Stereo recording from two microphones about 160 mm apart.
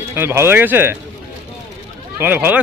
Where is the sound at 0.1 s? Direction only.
15° right (ahead or behind).